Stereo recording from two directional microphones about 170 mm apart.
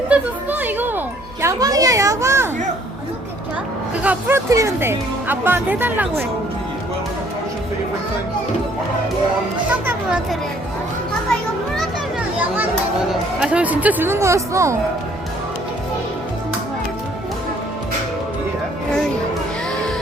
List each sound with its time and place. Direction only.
0.1 s music: 10° right (ahead or behind)
4.0 s speech: 10° right (ahead or behind)
13.4 s speech: 5° right (ahead or behind)